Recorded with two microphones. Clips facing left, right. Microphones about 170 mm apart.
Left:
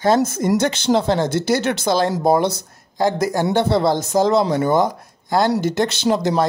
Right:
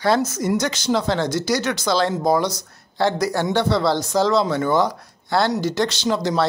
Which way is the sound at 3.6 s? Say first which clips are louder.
Left 2 dB; 50° left (ahead or behind).